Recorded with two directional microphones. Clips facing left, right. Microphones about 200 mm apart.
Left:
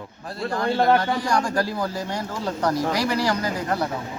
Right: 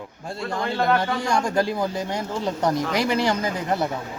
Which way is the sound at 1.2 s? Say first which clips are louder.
Right 1 dB; 25° right (ahead or behind).